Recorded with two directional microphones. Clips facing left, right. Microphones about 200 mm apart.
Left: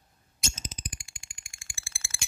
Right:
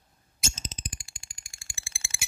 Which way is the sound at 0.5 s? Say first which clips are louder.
Right 1 dB; 25° right (ahead or behind).